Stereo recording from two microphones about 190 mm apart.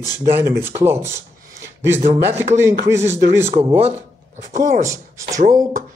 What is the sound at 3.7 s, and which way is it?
Speech, 35° right (ahead or behind).